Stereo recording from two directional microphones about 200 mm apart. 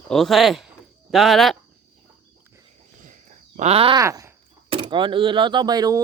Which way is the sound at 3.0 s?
40° right (ahead or behind).